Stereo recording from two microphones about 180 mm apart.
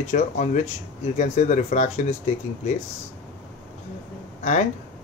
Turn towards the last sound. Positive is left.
turn(degrees=40)  # may be behind; listen again after turning